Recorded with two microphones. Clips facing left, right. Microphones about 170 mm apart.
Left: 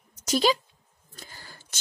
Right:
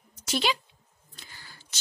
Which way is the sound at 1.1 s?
45° left (ahead or behind).